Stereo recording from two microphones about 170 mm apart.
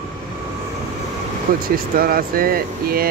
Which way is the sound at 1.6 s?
60° right (ahead or behind).